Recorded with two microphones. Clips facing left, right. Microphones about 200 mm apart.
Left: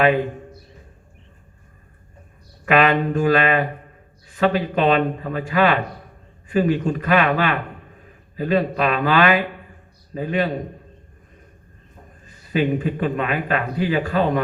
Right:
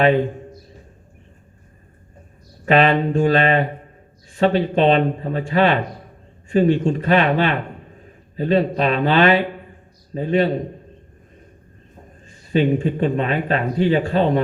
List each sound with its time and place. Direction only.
0.0 s a man's voice: 25° right (ahead or behind)
2.6 s a man's voice: 30° right (ahead or behind)
12.3 s a man's voice: 30° right (ahead or behind)